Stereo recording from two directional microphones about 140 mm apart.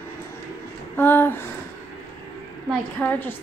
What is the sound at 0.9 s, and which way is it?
Speech, 15° left (ahead or behind).